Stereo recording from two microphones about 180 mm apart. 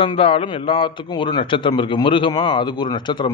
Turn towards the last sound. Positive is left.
turn(degrees=25)  # may be behind; listen again after turning